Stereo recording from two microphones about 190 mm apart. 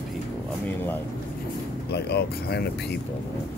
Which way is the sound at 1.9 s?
60° left (ahead or behind).